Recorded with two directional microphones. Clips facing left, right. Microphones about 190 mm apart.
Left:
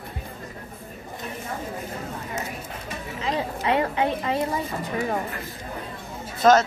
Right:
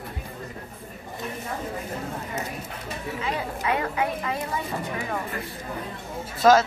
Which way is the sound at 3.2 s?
30° left (ahead or behind).